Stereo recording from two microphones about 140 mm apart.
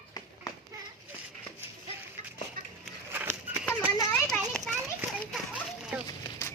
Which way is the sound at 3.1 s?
15° right (ahead or behind).